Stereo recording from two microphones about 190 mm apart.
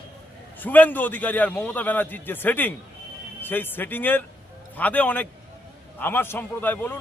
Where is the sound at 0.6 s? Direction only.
10° left (ahead or behind).